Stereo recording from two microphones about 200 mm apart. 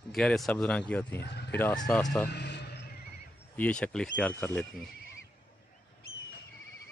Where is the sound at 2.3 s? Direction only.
55° left (ahead or behind).